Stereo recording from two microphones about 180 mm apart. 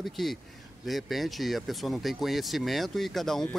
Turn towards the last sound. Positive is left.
turn(degrees=0)  # may be behind; listen again after turning